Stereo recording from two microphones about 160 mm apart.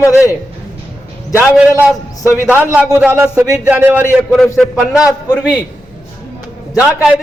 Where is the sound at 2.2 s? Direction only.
20° left (ahead or behind).